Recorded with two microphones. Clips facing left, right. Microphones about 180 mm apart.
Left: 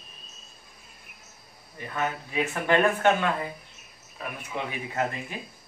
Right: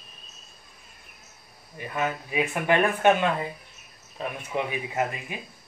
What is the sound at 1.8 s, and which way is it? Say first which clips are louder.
Speech: right 2 dB; 15° right (ahead or behind).